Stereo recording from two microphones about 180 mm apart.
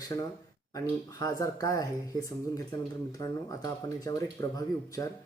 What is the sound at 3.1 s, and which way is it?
Speech, 20° left (ahead or behind).